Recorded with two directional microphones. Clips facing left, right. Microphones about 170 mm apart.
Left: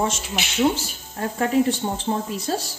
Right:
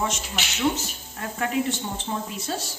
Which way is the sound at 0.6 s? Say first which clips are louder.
Left 4 dB; 35° left (ahead or behind).